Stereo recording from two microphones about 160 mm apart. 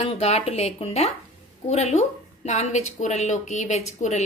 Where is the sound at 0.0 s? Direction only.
40° left (ahead or behind).